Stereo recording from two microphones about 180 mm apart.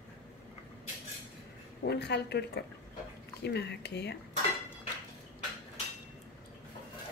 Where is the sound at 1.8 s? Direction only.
70° left (ahead or behind).